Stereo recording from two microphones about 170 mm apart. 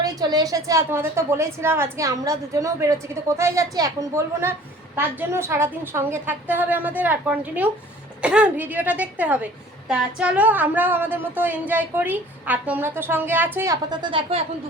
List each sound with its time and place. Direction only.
0.0 s a woman's voice: 20° right (ahead or behind)
13.9 s speech: 30° right (ahead or behind)